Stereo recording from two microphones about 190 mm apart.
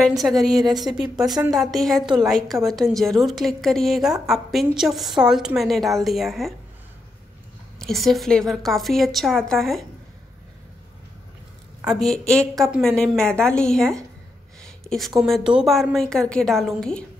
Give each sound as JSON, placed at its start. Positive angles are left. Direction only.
{"t": 0.2, "sound": "a woman's voice", "side_deg": -5}
{"t": 0.6, "sound": "speech", "side_deg": -20}
{"t": 0.9, "sound": "a woman's voice", "side_deg": -5}
{"t": 7.8, "sound": "a woman's voice", "side_deg": 0}
{"t": 12.1, "sound": "a woman's voice", "side_deg": -15}
{"t": 12.7, "sound": "a woman's voice", "side_deg": 5}